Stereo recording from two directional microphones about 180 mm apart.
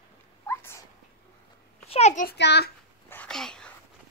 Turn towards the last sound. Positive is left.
turn(degrees=5)  # may be behind; listen again after turning